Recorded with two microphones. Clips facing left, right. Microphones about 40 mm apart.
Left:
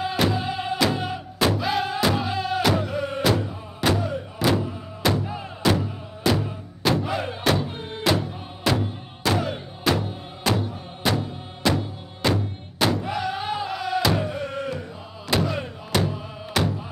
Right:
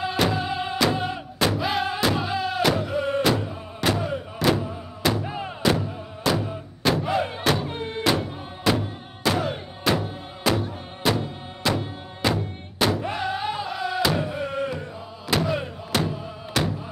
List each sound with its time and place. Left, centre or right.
0.0 s music: centre
5.2 s music: centre
5.6 s music: centre
13.4 s music: centre